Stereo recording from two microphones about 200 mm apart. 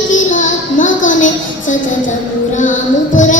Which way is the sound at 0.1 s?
40° left (ahead or behind).